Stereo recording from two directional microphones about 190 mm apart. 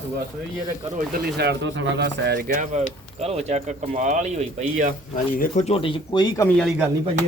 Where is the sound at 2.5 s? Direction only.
40° right (ahead or behind).